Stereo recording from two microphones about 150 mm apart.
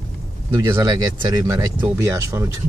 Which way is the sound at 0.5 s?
20° right (ahead or behind).